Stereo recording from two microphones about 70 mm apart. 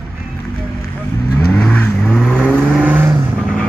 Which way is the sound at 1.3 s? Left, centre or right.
Centre.